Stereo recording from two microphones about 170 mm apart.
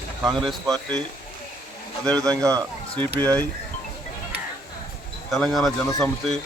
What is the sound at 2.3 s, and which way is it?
Speech, 20° right (ahead or behind).